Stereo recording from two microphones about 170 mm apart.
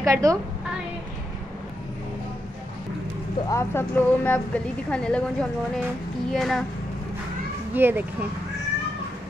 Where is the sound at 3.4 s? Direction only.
15° left (ahead or behind).